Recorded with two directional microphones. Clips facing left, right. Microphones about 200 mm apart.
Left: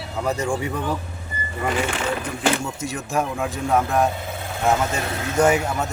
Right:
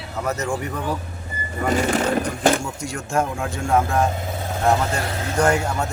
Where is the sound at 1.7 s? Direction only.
40° right (ahead or behind).